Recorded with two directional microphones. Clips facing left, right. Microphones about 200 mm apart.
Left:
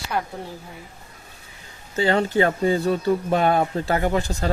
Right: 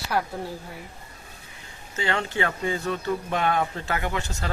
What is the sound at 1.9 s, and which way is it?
Speech, 35° left (ahead or behind).